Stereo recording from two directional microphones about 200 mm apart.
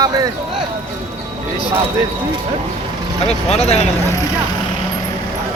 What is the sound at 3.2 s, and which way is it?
Speech, 30° left (ahead or behind).